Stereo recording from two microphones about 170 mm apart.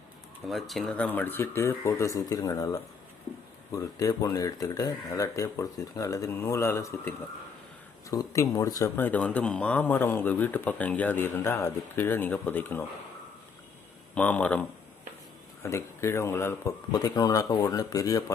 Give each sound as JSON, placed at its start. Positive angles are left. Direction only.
{"t": 0.4, "sound": "speech", "side_deg": 0}
{"t": 14.2, "sound": "speech", "side_deg": 10}
{"t": 15.6, "sound": "speech", "side_deg": 15}